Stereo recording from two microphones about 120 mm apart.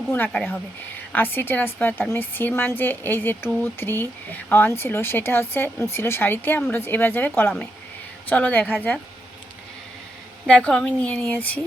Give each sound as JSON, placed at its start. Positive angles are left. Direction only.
{"t": 0.1, "sound": "speech", "side_deg": 15}
{"t": 10.4, "sound": "speech", "side_deg": 10}